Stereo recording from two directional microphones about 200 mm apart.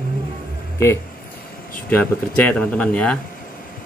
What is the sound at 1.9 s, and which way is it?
Speech, 10° left (ahead or behind).